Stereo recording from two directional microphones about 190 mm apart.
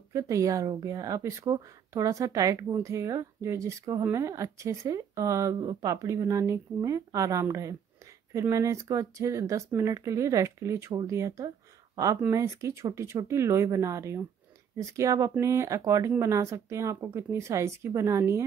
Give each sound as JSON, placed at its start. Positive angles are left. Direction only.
{"t": 0.1, "sound": "speech", "side_deg": -15}